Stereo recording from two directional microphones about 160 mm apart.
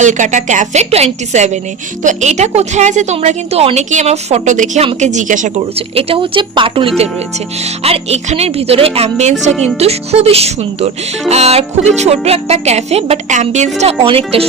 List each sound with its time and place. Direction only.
0.0 s a woman's voice: 50° right (ahead or behind)
5.9 s speech: 35° right (ahead or behind)